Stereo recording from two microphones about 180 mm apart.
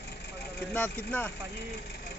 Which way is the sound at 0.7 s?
10° left (ahead or behind).